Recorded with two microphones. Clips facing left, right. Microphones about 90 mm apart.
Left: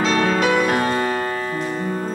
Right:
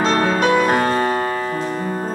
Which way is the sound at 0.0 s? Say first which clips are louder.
Right 1 dB; 35° right (ahead or behind).